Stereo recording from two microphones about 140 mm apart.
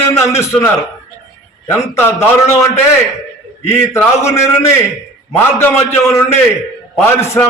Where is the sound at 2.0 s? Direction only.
15° left (ahead or behind).